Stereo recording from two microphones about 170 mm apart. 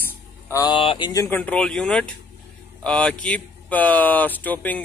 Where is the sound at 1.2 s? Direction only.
10° left (ahead or behind).